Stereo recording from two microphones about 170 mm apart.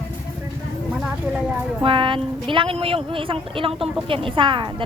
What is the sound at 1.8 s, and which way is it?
A woman's voice, 30° right (ahead or behind).